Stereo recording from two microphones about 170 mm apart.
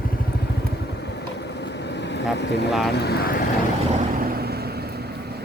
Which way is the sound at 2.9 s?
70° left (ahead or behind).